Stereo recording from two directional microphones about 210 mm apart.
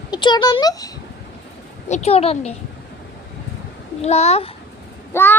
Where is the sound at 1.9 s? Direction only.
30° left (ahead or behind).